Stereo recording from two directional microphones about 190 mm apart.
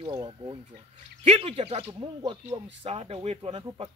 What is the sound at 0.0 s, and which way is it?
Speech, 25° right (ahead or behind).